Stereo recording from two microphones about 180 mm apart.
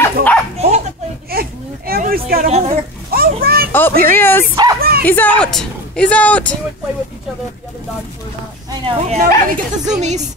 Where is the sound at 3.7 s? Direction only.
10° left (ahead or behind).